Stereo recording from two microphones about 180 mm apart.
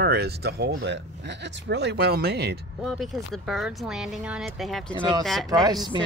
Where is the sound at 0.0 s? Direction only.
60° right (ahead or behind).